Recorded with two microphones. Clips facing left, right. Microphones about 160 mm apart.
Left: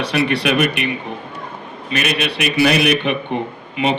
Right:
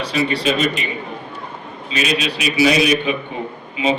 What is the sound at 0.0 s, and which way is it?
A man's voice, 65° left (ahead or behind).